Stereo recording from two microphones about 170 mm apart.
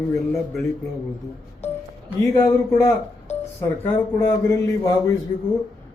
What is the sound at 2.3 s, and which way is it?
A man's voice, 20° left (ahead or behind).